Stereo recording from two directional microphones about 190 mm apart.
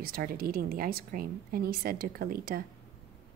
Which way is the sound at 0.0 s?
50° right (ahead or behind).